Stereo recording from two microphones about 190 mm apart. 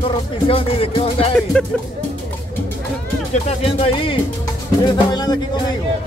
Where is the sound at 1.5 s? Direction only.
5° left (ahead or behind).